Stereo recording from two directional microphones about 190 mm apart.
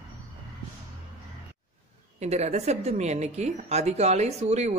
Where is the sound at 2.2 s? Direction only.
35° right (ahead or behind).